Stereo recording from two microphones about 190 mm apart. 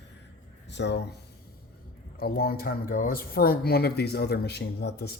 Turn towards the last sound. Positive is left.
turn(degrees=60)  # may be behind; listen again after turning